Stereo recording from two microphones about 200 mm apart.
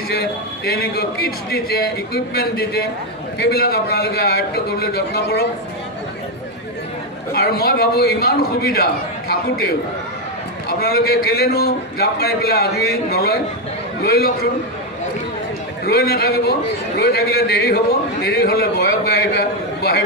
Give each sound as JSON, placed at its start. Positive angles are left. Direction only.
{"t": 0.1, "sound": "a man's voice", "side_deg": 50}
{"t": 7.3, "sound": "a man's voice", "side_deg": 50}
{"t": 10.8, "sound": "a man's voice", "side_deg": 50}
{"t": 15.8, "sound": "a man's voice", "side_deg": 50}